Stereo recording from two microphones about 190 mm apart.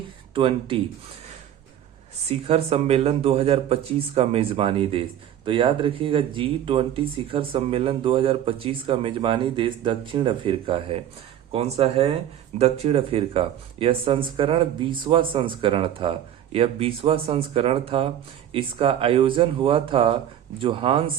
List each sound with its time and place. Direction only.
0.3 s speech: 25° right (ahead or behind)
2.2 s speech: 30° right (ahead or behind)